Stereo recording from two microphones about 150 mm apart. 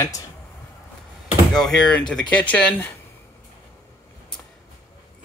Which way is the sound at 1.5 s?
5° left (ahead or behind).